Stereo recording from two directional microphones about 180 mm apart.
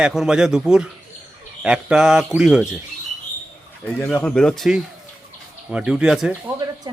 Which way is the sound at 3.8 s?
10° left (ahead or behind).